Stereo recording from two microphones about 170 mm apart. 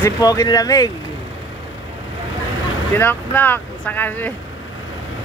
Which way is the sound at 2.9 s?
10° left (ahead or behind).